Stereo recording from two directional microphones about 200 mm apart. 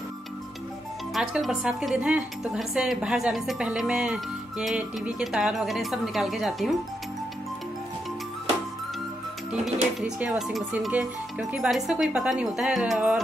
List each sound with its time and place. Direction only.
1.1 s speech: centre (ahead or behind)
9.5 s speech: centre (ahead or behind)